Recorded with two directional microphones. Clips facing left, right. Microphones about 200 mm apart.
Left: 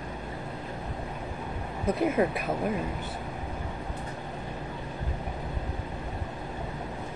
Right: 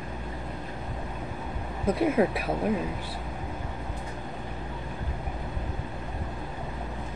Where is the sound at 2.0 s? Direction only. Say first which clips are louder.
Right 2 dB; 5° right (ahead or behind).